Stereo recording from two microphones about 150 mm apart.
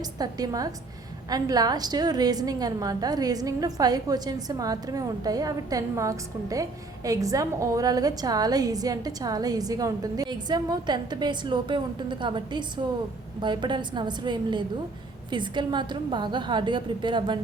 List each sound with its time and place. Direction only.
0.0 s a woman's voice: 25° right (ahead or behind)